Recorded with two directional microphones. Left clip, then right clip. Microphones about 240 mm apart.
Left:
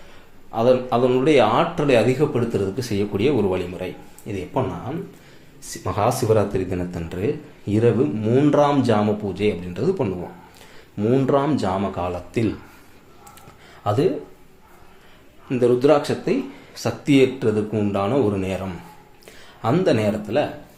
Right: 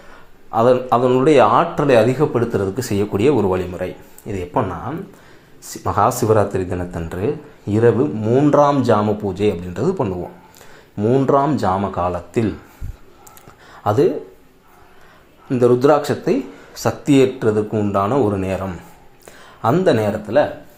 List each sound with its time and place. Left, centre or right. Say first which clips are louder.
0.5 s a man's voice: right 4 dB; centre
5.8 s speech: right 5 dB; centre
13.8 s speech: right 5 dB; centre
15.6 s speech: right 3 dB; centre
19.6 s speech: right 4 dB; centre